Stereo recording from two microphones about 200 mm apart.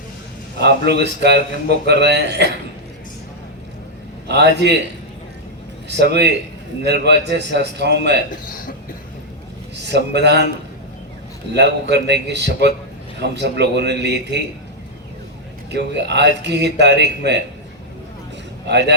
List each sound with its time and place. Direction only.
0.6 s speech: 60° right (ahead or behind)
4.3 s speech: 60° right (ahead or behind)
6.0 s speech: 60° right (ahead or behind)
9.7 s speech: 60° right (ahead or behind)
11.5 s speech: 60° right (ahead or behind)
15.7 s speech: 60° right (ahead or behind)
18.7 s speech: 60° right (ahead or behind)